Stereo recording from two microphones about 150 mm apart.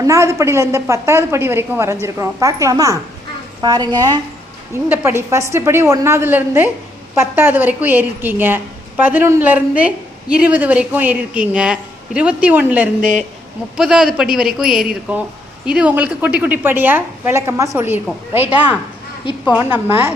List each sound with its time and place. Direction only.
0.0 s a woman's voice: 20° right (ahead or behind)